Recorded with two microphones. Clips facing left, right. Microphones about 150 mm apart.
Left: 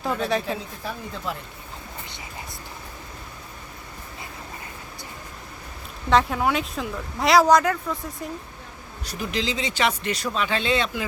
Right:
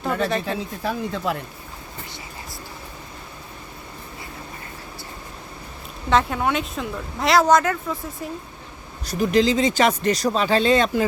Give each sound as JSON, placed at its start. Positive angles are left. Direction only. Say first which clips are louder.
{"t": 0.3, "sound": "speech", "louder": "right 1 dB", "side_deg": 0}
{"t": 0.9, "sound": "speech", "louder": "right 7 dB", "side_deg": -80}
{"t": 6.1, "sound": "speech", "louder": "even", "side_deg": 0}
{"t": 9.0, "sound": "speech", "louder": "right 9 dB", "side_deg": -45}